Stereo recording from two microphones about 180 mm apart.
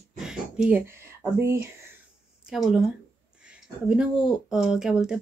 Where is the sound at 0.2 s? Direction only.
5° right (ahead or behind).